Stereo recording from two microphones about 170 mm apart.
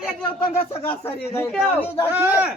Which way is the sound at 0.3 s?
35° left (ahead or behind).